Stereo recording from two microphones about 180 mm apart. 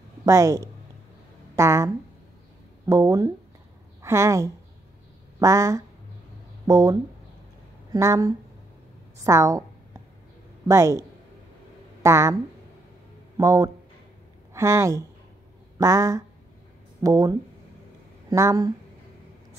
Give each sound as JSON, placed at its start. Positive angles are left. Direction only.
{"t": 0.2, "sound": "a woman's voice", "side_deg": -15}
{"t": 2.9, "sound": "a woman's voice", "side_deg": -20}
{"t": 10.7, "sound": "a woman's voice", "side_deg": -15}
{"t": 13.4, "sound": "a woman's voice", "side_deg": -20}